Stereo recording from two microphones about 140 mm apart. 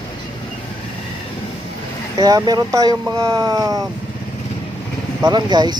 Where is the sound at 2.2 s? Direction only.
30° right (ahead or behind).